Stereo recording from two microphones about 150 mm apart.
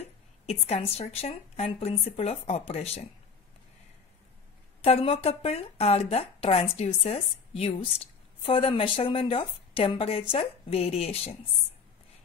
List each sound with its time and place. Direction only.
0.5 s speech: 45° left (ahead or behind)
4.8 s speech: 40° left (ahead or behind)